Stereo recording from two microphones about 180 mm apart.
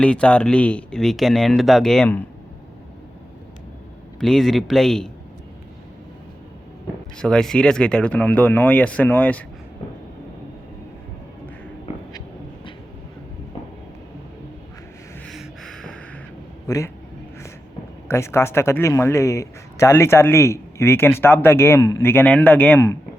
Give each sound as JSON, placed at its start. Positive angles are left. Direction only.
{"t": 0.0, "sound": "speech", "side_deg": 5}
{"t": 4.2, "sound": "speech", "side_deg": 0}
{"t": 7.2, "sound": "speech", "side_deg": 5}
{"t": 15.3, "sound": "a sound", "side_deg": 0}
{"t": 16.6, "sound": "speech", "side_deg": 20}
{"t": 18.1, "sound": "speech", "side_deg": 15}